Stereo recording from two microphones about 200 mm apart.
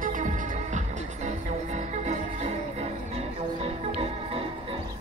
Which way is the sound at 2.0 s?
35° right (ahead or behind).